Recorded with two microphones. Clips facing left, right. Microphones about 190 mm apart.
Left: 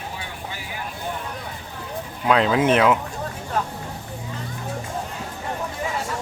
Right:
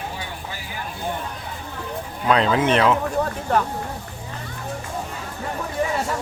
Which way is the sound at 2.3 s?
5° left (ahead or behind).